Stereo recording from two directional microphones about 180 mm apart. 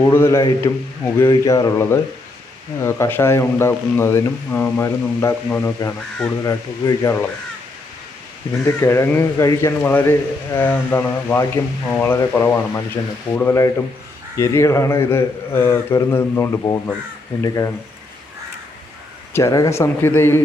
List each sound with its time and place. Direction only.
0.0 s speech: 15° left (ahead or behind)
8.6 s speech: 15° left (ahead or behind)
19.3 s speech: 15° left (ahead or behind)